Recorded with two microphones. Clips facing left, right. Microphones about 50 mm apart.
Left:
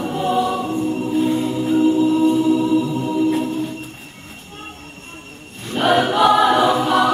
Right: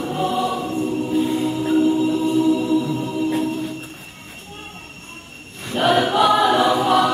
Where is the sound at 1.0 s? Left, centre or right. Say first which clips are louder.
Left 2 dB; centre.